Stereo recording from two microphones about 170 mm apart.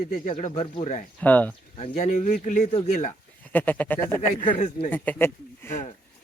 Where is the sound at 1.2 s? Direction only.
10° left (ahead or behind).